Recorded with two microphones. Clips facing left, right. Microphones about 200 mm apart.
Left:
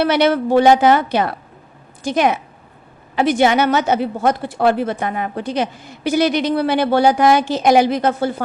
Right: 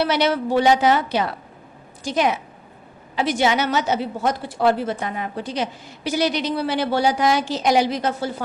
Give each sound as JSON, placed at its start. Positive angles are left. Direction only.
{"t": 0.0, "sound": "a woman's voice", "side_deg": 55}